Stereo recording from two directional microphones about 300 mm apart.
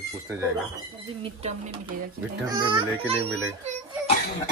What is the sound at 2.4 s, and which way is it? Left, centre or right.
A child's voice, centre.